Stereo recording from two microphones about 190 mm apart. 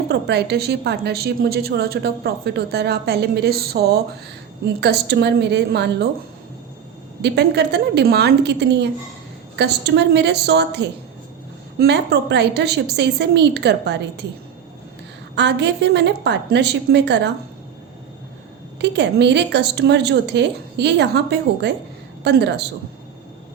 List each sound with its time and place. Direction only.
0.1 s a woman's voice: 60° right (ahead or behind)
7.2 s a woman's voice: 60° right (ahead or behind)
15.4 s a woman's voice: 65° right (ahead or behind)
18.8 s a woman's voice: 65° right (ahead or behind)